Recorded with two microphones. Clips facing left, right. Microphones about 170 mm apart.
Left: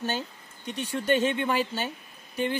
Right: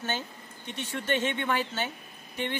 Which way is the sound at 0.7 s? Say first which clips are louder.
Left 5 dB; 35° left (ahead or behind).